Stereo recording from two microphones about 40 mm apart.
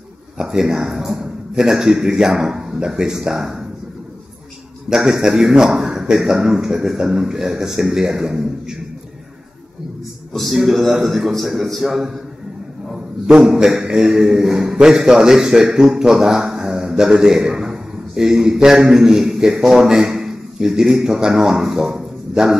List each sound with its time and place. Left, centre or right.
0.4 s a man's voice: centre
4.8 s a man's voice: centre
10.3 s a man's voice: centre
13.6 s a man's voice: centre
21.9 s a sound: centre